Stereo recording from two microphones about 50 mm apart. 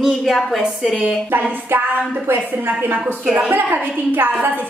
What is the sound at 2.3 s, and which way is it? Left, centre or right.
A woman's voice, right.